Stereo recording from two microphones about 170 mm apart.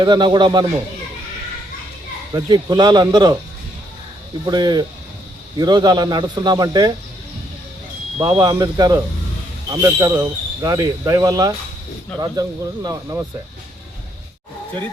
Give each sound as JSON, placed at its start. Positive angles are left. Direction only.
{"t": 0.0, "sound": "speech", "side_deg": -25}
{"t": 2.3, "sound": "speech", "side_deg": -25}
{"t": 4.4, "sound": "speech", "side_deg": -25}
{"t": 8.2, "sound": "speech", "side_deg": -25}